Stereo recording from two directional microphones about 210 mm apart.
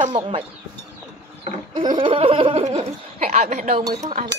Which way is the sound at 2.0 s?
25° right (ahead or behind).